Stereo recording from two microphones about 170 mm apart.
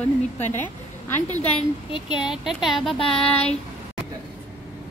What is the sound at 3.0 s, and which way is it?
Speech, 35° left (ahead or behind).